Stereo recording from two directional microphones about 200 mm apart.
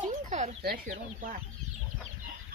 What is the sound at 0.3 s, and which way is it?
Speech, 35° right (ahead or behind).